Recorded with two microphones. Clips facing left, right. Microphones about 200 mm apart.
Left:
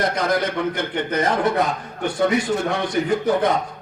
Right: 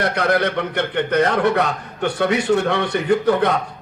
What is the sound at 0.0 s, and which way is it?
A man's voice, 65° right (ahead or behind).